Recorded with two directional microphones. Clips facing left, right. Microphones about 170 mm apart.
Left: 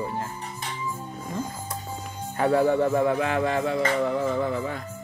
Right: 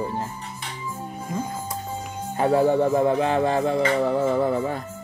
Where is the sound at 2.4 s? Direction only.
25° right (ahead or behind).